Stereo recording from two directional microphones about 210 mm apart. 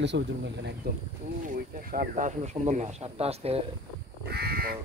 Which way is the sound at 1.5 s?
40° right (ahead or behind).